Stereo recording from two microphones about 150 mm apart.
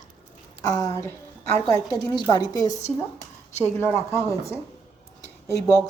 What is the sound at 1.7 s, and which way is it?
A woman's voice, 25° left (ahead or behind).